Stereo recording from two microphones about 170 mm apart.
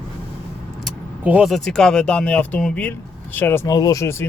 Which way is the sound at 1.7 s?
5° left (ahead or behind).